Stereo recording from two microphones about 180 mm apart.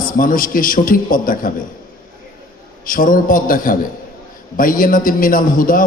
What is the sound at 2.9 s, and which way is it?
A man's voice, 50° left (ahead or behind).